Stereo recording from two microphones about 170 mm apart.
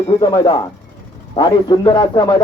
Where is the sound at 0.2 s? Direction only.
30° left (ahead or behind).